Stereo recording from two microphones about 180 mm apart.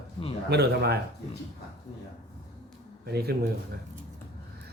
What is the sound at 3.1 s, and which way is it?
Speech, 60° right (ahead or behind).